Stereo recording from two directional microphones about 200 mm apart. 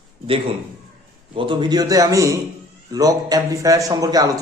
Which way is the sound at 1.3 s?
25° right (ahead or behind).